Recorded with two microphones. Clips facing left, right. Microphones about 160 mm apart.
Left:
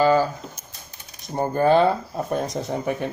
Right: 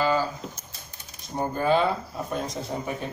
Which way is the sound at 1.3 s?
50° left (ahead or behind).